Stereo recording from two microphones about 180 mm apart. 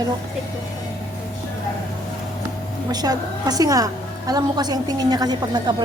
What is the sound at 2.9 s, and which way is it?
Speech, 20° right (ahead or behind).